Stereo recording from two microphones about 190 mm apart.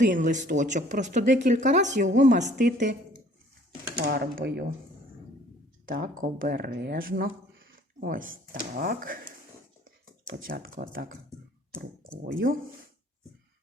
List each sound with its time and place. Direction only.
0.0 s speech: 40° right (ahead or behind)
3.9 s speech: 60° right (ahead or behind)
5.8 s speech: 45° right (ahead or behind)
12.2 s speech: 50° right (ahead or behind)